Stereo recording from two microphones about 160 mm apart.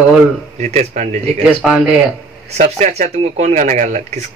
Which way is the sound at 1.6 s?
Centre (ahead or behind).